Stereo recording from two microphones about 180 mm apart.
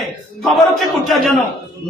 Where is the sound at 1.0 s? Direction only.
Centre (ahead or behind).